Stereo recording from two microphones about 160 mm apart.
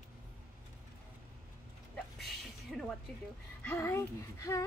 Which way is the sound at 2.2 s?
Centre (ahead or behind).